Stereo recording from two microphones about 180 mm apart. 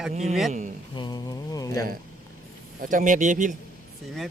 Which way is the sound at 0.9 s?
25° left (ahead or behind).